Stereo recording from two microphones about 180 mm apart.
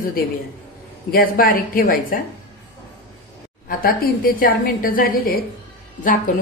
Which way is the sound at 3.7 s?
50° left (ahead or behind).